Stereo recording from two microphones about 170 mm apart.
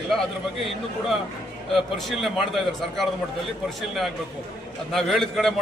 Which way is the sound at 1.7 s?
Centre (ahead or behind).